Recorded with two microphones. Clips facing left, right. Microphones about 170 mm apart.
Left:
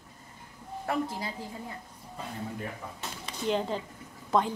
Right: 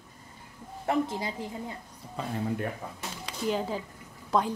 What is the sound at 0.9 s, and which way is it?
Speech, 20° right (ahead or behind).